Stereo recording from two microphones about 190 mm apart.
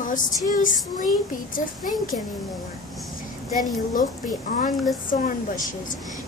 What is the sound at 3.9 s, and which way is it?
A woman's voice, 45° left (ahead or behind).